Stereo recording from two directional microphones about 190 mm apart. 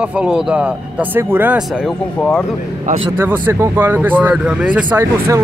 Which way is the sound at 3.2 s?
10° right (ahead or behind).